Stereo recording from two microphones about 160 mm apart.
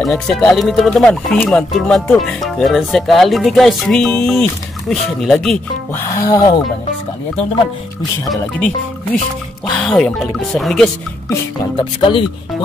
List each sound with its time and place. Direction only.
0.0 s speech: centre (ahead or behind)
5.9 s speech: 25° left (ahead or behind)
8.4 s speech: 10° left (ahead or behind)
11.8 s speech: 30° left (ahead or behind)